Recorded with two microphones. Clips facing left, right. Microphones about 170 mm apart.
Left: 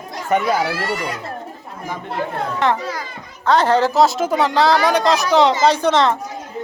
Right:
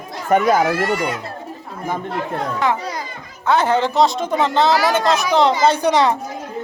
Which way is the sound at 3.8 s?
5° left (ahead or behind).